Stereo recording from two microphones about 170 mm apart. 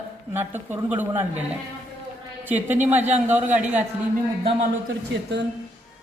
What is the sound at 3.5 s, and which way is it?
Speech, 45° right (ahead or behind).